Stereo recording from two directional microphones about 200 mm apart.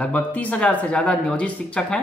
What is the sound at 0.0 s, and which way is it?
Speech, 10° left (ahead or behind).